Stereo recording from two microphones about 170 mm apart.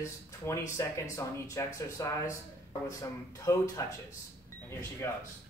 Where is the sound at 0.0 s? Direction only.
15° left (ahead or behind).